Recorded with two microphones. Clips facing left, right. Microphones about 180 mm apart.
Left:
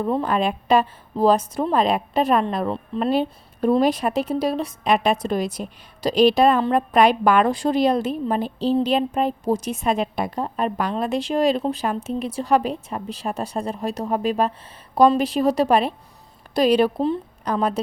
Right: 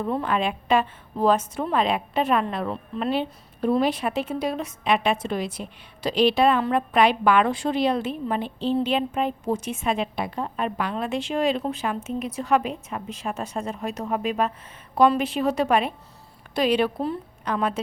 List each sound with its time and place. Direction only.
0.0 s a woman's voice: 35° left (ahead or behind)